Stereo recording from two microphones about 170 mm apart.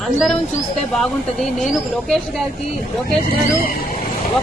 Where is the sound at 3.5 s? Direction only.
60° left (ahead or behind).